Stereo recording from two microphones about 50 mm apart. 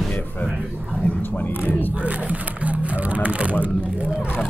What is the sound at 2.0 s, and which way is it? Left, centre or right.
Speech, right.